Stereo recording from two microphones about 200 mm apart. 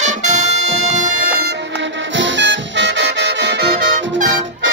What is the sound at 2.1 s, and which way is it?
Music, 65° right (ahead or behind).